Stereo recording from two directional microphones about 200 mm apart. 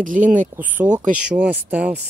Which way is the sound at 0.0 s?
40° right (ahead or behind).